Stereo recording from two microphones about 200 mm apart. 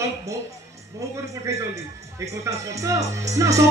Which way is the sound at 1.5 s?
15° right (ahead or behind).